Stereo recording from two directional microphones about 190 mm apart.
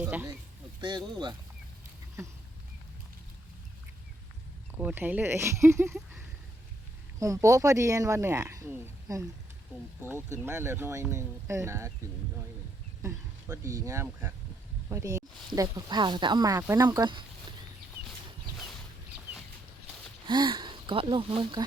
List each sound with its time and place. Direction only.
0.0 s speech: 10° right (ahead or behind)
0.8 s speech: 25° right (ahead or behind)
4.8 s speech: 10° right (ahead or behind)
7.2 s speech: 15° right (ahead or behind)
13.0 s speech: 15° right (ahead or behind)
20.2 s speech: 25° right (ahead or behind)